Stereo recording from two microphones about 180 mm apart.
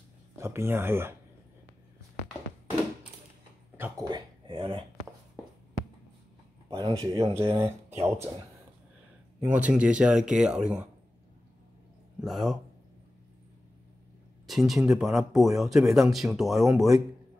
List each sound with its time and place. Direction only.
0.4 s speech: 15° right (ahead or behind)
3.7 s a sound: 10° right (ahead or behind)
4.1 s speech: 30° right (ahead or behind)
6.7 s speech: 30° right (ahead or behind)
7.2 s speech: 15° right (ahead or behind)
9.4 s speech: 10° right (ahead or behind)
12.2 s speech: centre (ahead or behind)
14.5 s speech: centre (ahead or behind)